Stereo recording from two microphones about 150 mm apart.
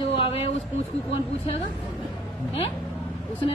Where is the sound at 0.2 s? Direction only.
40° left (ahead or behind).